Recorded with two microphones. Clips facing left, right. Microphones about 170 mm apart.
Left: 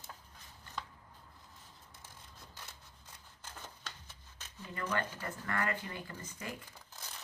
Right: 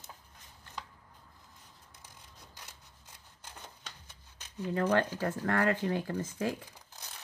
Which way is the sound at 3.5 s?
15° right (ahead or behind).